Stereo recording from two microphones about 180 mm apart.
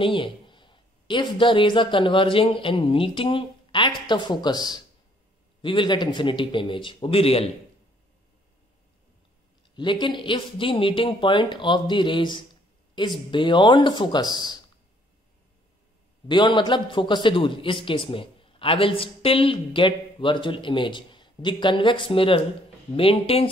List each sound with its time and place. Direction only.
0.0 s a man's voice: 30° left (ahead or behind)
9.8 s a man's voice: 25° left (ahead or behind)
16.3 s a man's voice: 25° left (ahead or behind)